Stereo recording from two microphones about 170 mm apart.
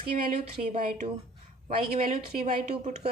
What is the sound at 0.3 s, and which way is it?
Speech, 45° right (ahead or behind).